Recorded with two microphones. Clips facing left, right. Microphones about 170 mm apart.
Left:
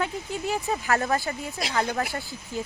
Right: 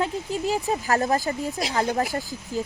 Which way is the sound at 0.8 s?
35° right (ahead or behind).